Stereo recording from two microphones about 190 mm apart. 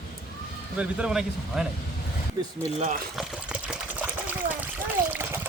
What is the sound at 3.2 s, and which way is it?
Water, centre (ahead or behind).